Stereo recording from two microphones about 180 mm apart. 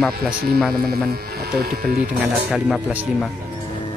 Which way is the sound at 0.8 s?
60° right (ahead or behind).